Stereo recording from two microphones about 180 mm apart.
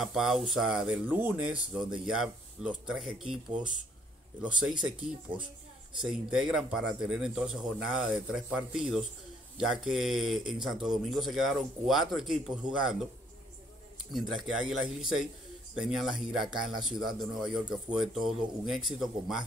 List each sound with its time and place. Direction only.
0.0 s speech: centre (ahead or behind)
5.3 s speech: 30° right (ahead or behind)
5.9 s speech: centre (ahead or behind)
14.1 s speech: centre (ahead or behind)